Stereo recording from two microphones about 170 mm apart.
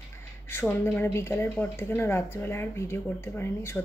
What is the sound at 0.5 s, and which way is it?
A woman's voice, 15° left (ahead or behind).